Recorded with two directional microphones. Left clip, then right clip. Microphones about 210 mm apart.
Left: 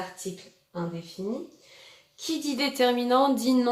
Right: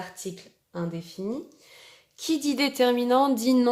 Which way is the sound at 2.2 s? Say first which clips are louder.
Right 3 dB; 30° right (ahead or behind).